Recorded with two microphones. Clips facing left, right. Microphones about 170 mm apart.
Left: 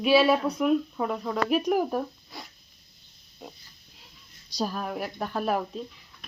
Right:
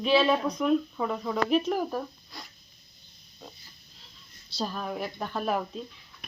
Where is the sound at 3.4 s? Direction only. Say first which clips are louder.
Left 3 dB; 20° left (ahead or behind).